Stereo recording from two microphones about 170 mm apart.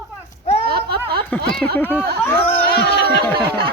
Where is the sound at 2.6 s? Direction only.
75° left (ahead or behind).